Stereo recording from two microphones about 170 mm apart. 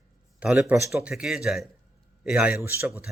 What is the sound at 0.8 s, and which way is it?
Speech, 15° right (ahead or behind).